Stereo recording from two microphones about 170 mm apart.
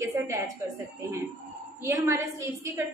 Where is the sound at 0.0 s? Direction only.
15° right (ahead or behind).